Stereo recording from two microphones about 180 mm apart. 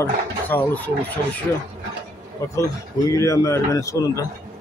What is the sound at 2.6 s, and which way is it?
Speech, 15° left (ahead or behind).